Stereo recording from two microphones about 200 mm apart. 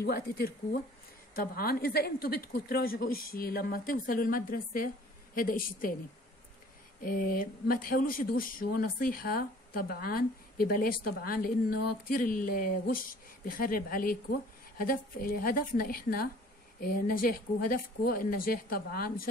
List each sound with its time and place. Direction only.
0.0 s speech: 50° left (ahead or behind)
7.1 s speech: 45° left (ahead or behind)